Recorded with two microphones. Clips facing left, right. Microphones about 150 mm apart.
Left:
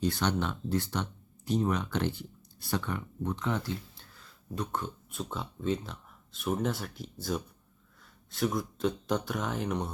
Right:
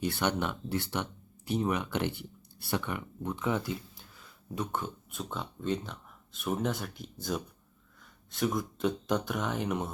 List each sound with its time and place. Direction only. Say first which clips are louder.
0.0 s speech: left 1 dB; 10° right (ahead or behind)